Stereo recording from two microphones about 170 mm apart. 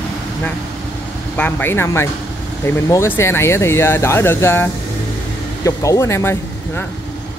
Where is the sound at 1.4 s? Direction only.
10° left (ahead or behind).